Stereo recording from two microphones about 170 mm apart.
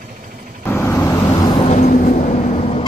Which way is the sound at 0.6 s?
10° left (ahead or behind).